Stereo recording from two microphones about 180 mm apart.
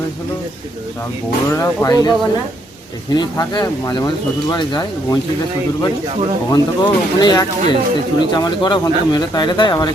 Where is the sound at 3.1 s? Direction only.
25° left (ahead or behind).